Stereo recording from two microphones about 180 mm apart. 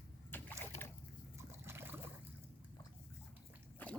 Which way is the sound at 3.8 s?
10° left (ahead or behind).